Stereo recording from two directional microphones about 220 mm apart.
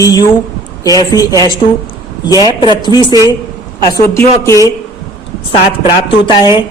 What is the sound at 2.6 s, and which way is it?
Speech, 20° left (ahead or behind).